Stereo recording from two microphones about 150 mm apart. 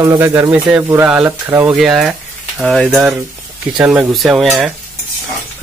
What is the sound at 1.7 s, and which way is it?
Speech, 5° right (ahead or behind).